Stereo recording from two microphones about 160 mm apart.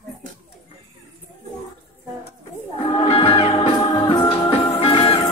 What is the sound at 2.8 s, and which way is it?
Music, 35° left (ahead or behind).